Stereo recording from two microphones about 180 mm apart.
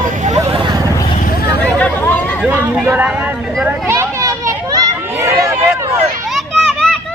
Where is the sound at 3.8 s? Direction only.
15° right (ahead or behind).